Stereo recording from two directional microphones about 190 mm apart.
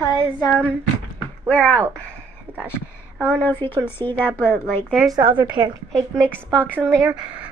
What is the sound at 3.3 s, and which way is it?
Speech, 10° left (ahead or behind).